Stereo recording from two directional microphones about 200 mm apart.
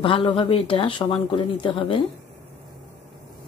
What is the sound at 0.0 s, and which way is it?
Speech, 25° left (ahead or behind).